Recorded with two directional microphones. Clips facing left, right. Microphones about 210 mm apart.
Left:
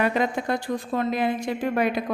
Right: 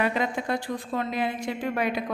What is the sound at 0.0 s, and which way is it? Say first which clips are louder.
A woman's voice: left 3 dB; 45° left (ahead or behind).